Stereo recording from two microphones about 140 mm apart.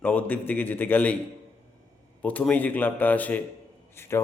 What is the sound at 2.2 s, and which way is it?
A man's voice, 10° left (ahead or behind).